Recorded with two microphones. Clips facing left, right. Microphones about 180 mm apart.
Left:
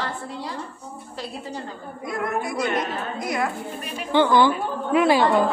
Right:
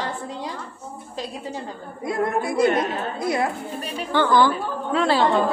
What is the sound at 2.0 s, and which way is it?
A woman's voice, 30° right (ahead or behind).